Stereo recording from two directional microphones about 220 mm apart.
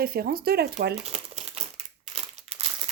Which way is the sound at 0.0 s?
45° right (ahead or behind).